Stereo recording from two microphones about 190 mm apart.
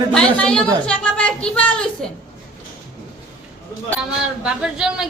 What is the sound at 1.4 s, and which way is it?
Speech, 5° left (ahead or behind).